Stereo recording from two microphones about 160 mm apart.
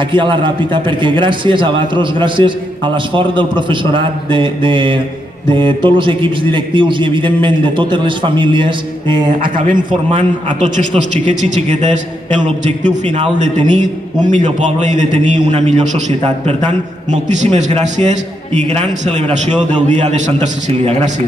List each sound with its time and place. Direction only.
0.1 s a man's voice: 30° right (ahead or behind)
11.2 s a man's voice: 45° right (ahead or behind)
17.1 s a man's voice: 45° right (ahead or behind)